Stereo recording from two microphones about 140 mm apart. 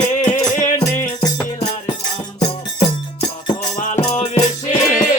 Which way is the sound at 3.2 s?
35° left (ahead or behind).